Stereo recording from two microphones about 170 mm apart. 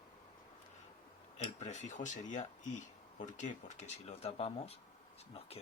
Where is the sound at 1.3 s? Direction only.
45° left (ahead or behind).